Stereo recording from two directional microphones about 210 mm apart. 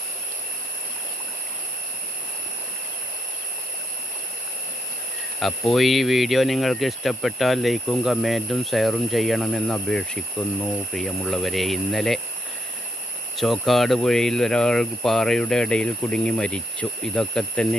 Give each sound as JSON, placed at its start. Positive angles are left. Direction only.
{"t": 5.4, "sound": "speech", "side_deg": 0}
{"t": 13.3, "sound": "speech", "side_deg": 0}